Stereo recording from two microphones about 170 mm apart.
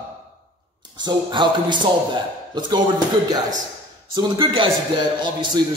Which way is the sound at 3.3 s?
25° right (ahead or behind).